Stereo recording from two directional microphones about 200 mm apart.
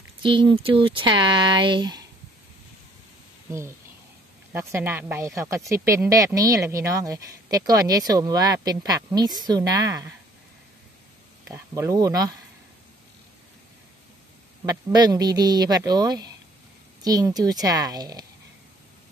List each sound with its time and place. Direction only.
0.2 s speech: 25° right (ahead or behind)
4.5 s speech: 10° right (ahead or behind)
11.4 s speech: 15° right (ahead or behind)
14.7 s speech: 20° right (ahead or behind)